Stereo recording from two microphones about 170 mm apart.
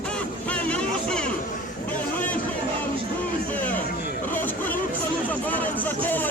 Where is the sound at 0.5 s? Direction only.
5° left (ahead or behind).